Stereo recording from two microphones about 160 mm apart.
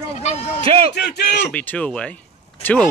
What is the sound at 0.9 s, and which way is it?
Speech, 90° left.